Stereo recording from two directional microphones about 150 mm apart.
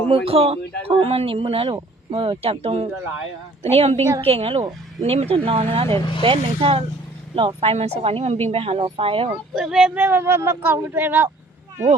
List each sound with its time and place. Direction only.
0.1 s a woman's voice: 40° right (ahead or behind)
9.6 s speech: 5° right (ahead or behind)